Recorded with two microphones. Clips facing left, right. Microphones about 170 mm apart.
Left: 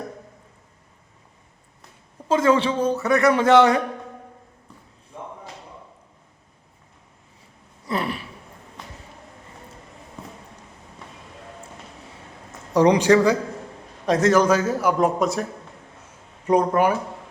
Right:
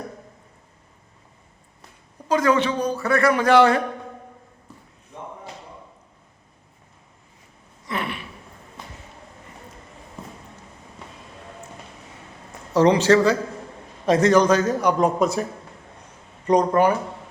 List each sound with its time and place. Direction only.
2.2 s a man's voice: 25° left (ahead or behind)
7.9 s gasp: 35° left (ahead or behind)
12.7 s speech: 15° left (ahead or behind)
14.0 s a man's voice: centre (ahead or behind)
16.5 s speech: 10° left (ahead or behind)